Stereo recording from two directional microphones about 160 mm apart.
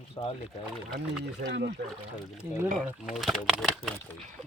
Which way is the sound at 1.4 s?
65° right (ahead or behind).